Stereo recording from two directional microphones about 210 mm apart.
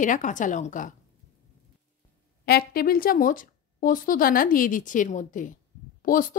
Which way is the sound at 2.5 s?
45° left (ahead or behind).